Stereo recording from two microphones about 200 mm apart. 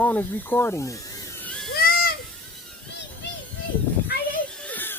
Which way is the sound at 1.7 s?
50° left (ahead or behind).